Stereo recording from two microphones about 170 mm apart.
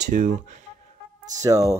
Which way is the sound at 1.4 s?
20° right (ahead or behind).